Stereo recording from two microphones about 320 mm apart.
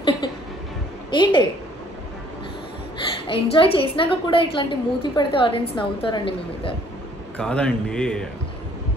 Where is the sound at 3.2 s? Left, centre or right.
Centre.